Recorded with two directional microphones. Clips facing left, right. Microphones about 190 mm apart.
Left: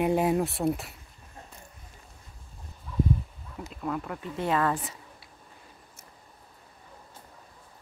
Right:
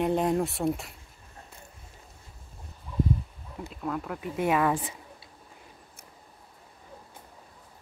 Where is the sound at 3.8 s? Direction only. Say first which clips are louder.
Even; centre (ahead or behind).